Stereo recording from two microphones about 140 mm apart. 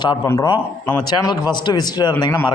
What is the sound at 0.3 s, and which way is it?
A man's voice, 30° left (ahead or behind).